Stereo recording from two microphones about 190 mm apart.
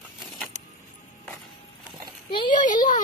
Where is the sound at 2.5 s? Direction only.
40° left (ahead or behind).